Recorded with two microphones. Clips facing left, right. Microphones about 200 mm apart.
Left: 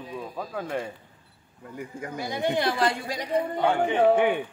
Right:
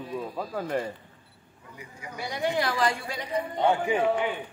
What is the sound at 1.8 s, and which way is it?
Speech, 50° left (ahead or behind).